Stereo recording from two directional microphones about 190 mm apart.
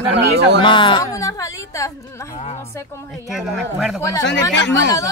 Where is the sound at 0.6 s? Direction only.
25° left (ahead or behind).